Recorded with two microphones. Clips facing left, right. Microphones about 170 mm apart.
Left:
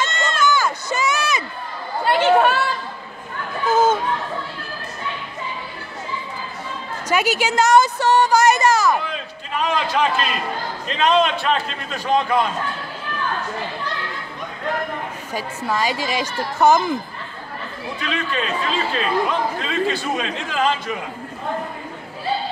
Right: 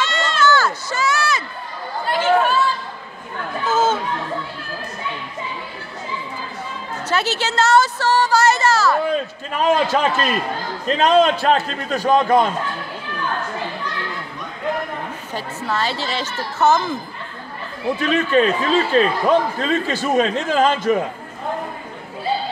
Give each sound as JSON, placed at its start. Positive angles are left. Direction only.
{"t": 0.1, "sound": "run", "side_deg": 50}
{"t": 0.4, "sound": "run", "side_deg": 15}
{"t": 2.0, "sound": "chatter", "side_deg": 65}
{"t": 3.6, "sound": "a sound", "side_deg": 15}
{"t": 7.1, "sound": "a sound", "side_deg": 10}
{"t": 9.1, "sound": "a man's voice", "side_deg": -45}
{"t": 15.3, "sound": "a woman's voice", "side_deg": 10}
{"t": 18.0, "sound": "speech", "side_deg": -45}